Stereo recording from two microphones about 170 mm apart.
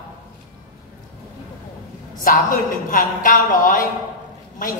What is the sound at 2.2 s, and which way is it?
A woman's voice, 50° left (ahead or behind).